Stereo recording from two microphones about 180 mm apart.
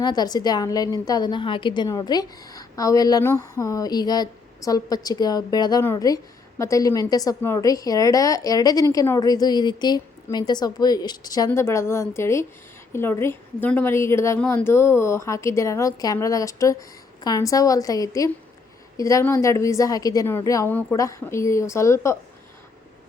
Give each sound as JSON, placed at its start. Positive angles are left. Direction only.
{"t": 0.0, "sound": "a woman's voice", "side_deg": 25}